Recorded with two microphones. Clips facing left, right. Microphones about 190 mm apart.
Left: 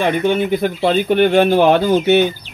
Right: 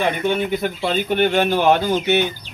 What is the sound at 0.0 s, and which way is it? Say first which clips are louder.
Speech: left 4 dB; 50° left (ahead or behind).